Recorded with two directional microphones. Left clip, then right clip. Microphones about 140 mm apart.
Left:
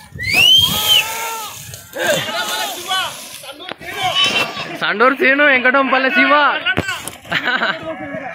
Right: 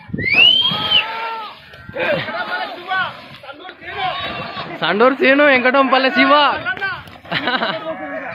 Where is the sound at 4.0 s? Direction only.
10° left (ahead or behind).